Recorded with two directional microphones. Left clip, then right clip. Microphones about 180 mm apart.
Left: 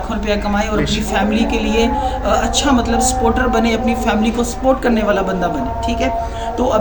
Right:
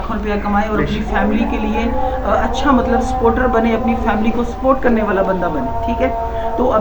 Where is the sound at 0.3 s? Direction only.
65° left (ahead or behind); by 2.6 s 80° left.